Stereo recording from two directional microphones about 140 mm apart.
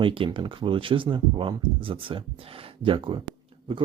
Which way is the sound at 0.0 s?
40° right (ahead or behind).